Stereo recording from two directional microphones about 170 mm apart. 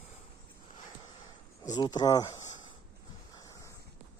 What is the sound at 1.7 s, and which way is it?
Speech, 25° left (ahead or behind).